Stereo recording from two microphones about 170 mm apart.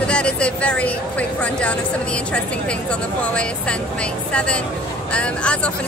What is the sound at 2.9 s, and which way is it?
Speech, 5° left (ahead or behind).